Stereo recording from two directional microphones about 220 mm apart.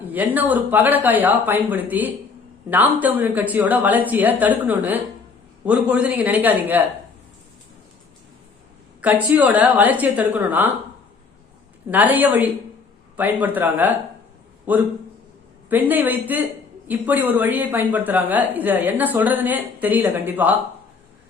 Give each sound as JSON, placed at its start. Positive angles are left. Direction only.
{"t": 0.1, "sound": "speech", "side_deg": -10}
{"t": 9.0, "sound": "speech", "side_deg": -5}
{"t": 11.9, "sound": "speech", "side_deg": -10}